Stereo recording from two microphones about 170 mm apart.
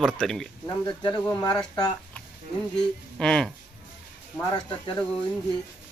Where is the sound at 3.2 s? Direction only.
5° left (ahead or behind).